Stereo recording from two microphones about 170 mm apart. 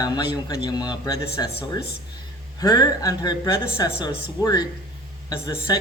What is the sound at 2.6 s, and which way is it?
A man's voice, 25° left (ahead or behind).